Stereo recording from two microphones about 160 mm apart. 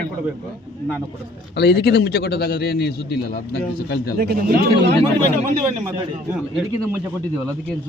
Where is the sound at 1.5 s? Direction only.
90° left.